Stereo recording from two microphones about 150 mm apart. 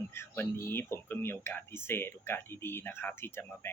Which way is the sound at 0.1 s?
15° left (ahead or behind).